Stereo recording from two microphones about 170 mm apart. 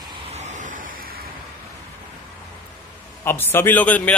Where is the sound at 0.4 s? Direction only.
45° right (ahead or behind).